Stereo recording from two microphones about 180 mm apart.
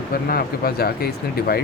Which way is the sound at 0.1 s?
55° left (ahead or behind).